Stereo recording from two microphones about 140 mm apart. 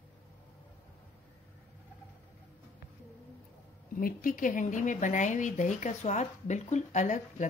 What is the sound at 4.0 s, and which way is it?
Speech, 90° left.